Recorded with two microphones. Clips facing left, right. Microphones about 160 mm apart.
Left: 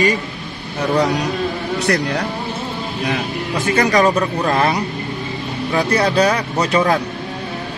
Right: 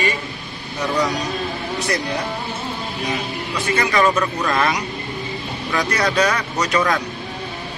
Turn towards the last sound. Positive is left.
turn(degrees=30)  # may be behind; listen again after turning